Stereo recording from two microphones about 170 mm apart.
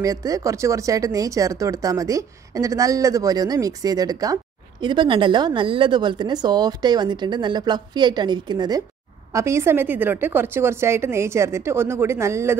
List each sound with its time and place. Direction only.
0.0 s a woman's voice: 20° right (ahead or behind)